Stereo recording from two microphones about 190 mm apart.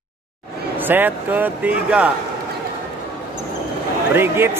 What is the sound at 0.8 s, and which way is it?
A man's voice, 10° right (ahead or behind).